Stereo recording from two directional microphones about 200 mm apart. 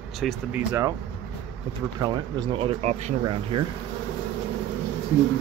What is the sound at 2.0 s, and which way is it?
Speech, 20° right (ahead or behind).